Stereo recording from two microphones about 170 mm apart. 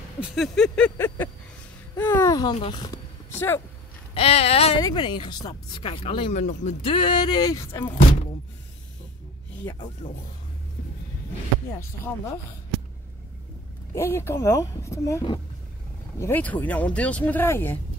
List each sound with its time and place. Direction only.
0.2 s speech: centre (ahead or behind); by 3.0 s 25° left (ahead or behind)
3.3 s speech: 15° left (ahead or behind)
4.1 s speech: 35° left (ahead or behind)
6.3 s speech: 45° left (ahead or behind); by 7.9 s 25° left (ahead or behind)
10.0 s speech: 30° left (ahead or behind)
11.7 s speech: 15° left (ahead or behind)
13.9 s speech: 15° left (ahead or behind)